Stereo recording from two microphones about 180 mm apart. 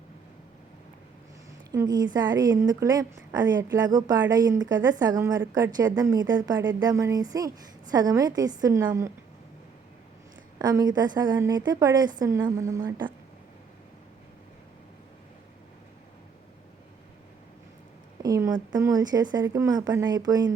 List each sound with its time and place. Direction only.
1.7 s a woman's voice: 20° right (ahead or behind)
10.6 s a woman's voice: 20° right (ahead or behind)
18.2 s a woman's voice: 20° right (ahead or behind)